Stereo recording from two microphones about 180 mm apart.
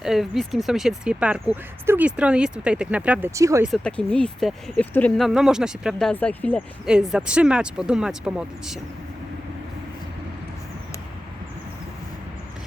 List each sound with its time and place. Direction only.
0.0 s speech: centre (ahead or behind)
3.7 s speech: 5° left (ahead or behind)
6.8 s speech: 5° right (ahead or behind)